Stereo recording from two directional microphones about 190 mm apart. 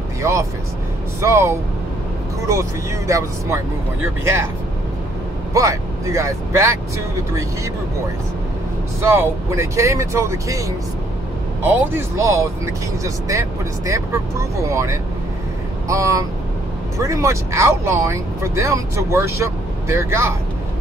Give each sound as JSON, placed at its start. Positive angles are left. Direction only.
{"t": 0.2, "sound": "speech", "side_deg": -15}
{"t": 3.1, "sound": "speech", "side_deg": -15}
{"t": 5.5, "sound": "speech", "side_deg": -15}
{"t": 9.0, "sound": "speech", "side_deg": -15}
{"t": 11.6, "sound": "speech", "side_deg": -10}